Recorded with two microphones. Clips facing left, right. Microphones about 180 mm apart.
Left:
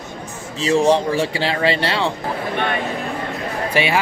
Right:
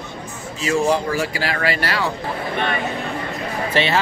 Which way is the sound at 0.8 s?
30° left (ahead or behind).